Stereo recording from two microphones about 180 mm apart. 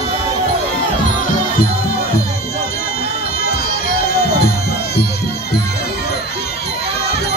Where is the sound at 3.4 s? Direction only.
55° left (ahead or behind).